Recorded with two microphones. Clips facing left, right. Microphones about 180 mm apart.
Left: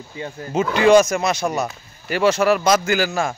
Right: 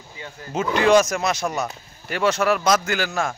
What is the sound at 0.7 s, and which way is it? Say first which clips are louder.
Speech: left 3 dB; centre (ahead or behind).